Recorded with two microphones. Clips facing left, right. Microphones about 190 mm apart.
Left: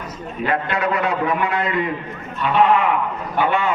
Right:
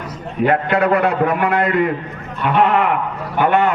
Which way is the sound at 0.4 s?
60° right (ahead or behind).